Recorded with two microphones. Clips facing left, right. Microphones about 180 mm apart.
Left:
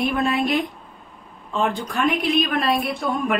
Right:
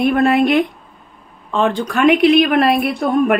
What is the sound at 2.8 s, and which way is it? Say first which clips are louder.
Speech: right 8 dB; 60° right (ahead or behind).